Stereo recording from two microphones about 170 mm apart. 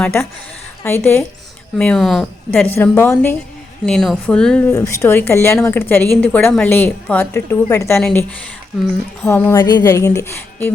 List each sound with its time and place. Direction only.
0.0 s a woman's voice: 10° left (ahead or behind)
4.7 s a woman's voice: 15° left (ahead or behind)